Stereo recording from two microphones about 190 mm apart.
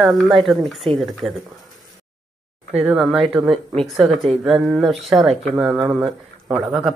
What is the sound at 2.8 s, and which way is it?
Speech, centre (ahead or behind).